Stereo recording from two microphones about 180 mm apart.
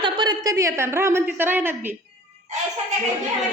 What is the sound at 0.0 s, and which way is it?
A woman's voice, 25° right (ahead or behind).